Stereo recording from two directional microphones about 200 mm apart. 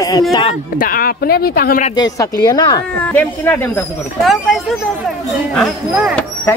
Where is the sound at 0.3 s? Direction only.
25° left (ahead or behind).